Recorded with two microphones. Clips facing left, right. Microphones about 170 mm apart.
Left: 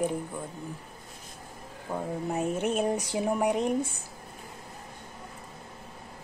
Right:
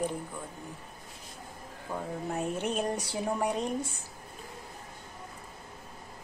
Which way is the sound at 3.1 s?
15° left (ahead or behind).